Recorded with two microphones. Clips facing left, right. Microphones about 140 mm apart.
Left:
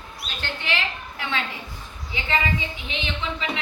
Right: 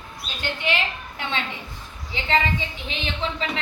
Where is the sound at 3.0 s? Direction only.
35° right (ahead or behind).